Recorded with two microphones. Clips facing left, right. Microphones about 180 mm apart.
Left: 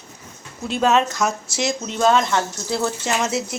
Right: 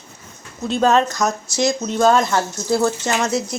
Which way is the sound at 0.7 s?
5° left (ahead or behind).